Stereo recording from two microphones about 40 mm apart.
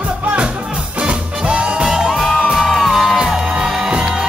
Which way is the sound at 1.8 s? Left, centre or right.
Centre.